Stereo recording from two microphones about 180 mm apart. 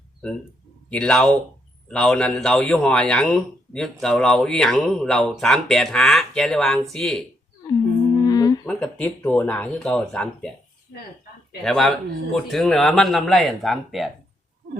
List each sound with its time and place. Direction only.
0.9 s speech: 5° left (ahead or behind)
8.3 s humming: 20° left (ahead or behind)
8.6 s speech: 5° left (ahead or behind)
11.6 s speech: centre (ahead or behind)